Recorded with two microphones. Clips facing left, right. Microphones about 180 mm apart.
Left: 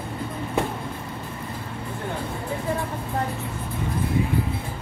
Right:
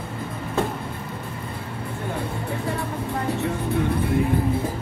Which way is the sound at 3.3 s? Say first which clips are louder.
Right 7 dB; 75° right (ahead or behind).